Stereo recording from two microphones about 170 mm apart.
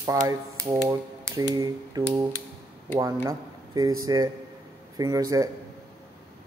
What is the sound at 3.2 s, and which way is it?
Speech, 20° right (ahead or behind).